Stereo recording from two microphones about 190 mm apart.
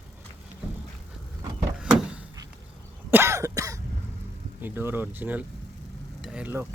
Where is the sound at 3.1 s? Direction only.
15° right (ahead or behind).